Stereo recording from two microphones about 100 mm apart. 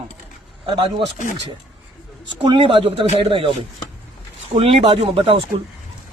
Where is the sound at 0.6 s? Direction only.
50° right (ahead or behind).